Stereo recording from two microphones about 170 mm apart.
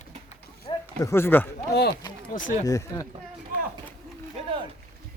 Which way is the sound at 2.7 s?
20° left (ahead or behind).